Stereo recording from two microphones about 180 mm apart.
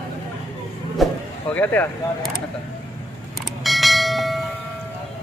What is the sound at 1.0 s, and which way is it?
Vehicle, 10° left (ahead or behind).